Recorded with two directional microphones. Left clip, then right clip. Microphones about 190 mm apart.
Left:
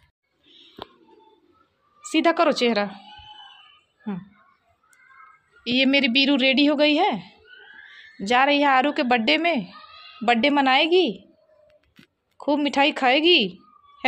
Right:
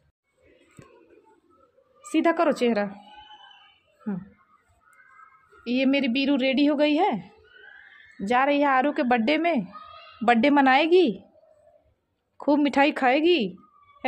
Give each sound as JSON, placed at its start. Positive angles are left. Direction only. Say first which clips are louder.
{"t": 2.0, "sound": "a woman's voice", "louder": "left 3 dB", "side_deg": -5}
{"t": 5.6, "sound": "a woman's voice", "louder": "left 4 dB", "side_deg": -5}
{"t": 12.4, "sound": "speech", "louder": "even", "side_deg": -15}